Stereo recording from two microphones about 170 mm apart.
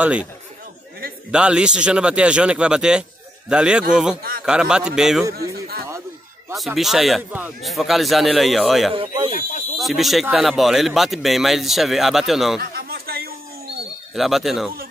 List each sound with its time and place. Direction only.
0.0 s speech: 5° right (ahead or behind)
1.3 s a man's voice: 5° right (ahead or behind)
5.3 s a man's voice: 65° right (ahead or behind)
6.5 s a man's voice: centre (ahead or behind)
12.7 s a sound: 65° right (ahead or behind)
14.1 s a man's voice: centre (ahead or behind)